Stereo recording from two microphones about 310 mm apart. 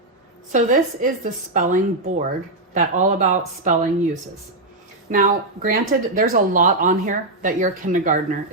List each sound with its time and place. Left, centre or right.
0.5 s speech: right